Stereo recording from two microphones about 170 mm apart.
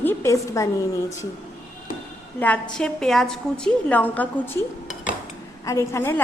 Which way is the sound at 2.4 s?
5° left (ahead or behind).